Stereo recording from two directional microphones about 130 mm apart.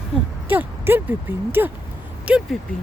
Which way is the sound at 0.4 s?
15° right (ahead or behind).